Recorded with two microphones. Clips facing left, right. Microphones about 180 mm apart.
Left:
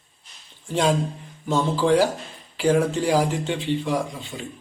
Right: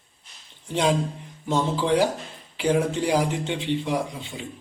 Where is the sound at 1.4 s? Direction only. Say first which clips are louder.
Left 3 dB; 20° right (ahead or behind).